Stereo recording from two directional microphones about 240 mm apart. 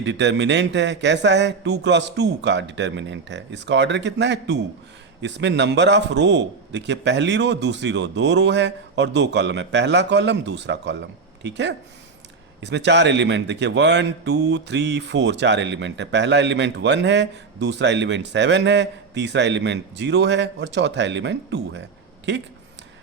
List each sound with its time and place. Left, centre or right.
0.0 s a man's voice: right